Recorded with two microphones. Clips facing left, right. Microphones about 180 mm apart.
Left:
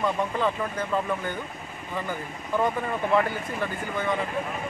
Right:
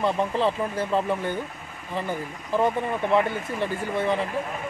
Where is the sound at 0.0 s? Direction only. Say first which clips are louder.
Right 2 dB; 30° right (ahead or behind).